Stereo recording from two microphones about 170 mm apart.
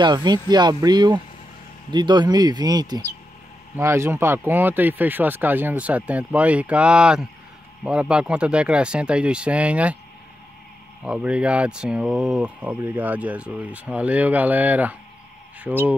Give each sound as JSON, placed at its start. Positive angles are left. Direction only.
{"t": 0.0, "sound": "speech", "side_deg": -25}
{"t": 11.1, "sound": "speech", "side_deg": -5}